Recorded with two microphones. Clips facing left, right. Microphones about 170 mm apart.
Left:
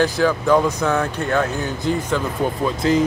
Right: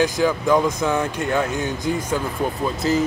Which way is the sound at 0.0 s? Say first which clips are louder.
Left 1 dB; 15° right (ahead or behind).